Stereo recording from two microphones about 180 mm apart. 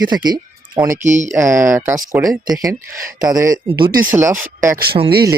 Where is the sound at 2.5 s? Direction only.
20° right (ahead or behind).